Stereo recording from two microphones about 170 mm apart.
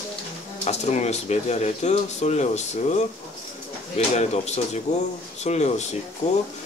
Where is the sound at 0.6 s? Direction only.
40° left (ahead or behind).